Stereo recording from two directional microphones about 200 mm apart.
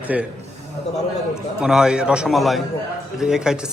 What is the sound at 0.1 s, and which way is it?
Speech, 5° right (ahead or behind).